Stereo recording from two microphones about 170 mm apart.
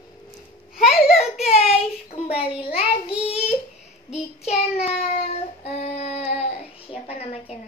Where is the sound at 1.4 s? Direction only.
40° left (ahead or behind).